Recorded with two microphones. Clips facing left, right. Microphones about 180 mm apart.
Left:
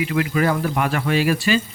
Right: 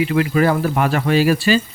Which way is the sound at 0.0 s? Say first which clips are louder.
Right 4 dB; 35° right (ahead or behind).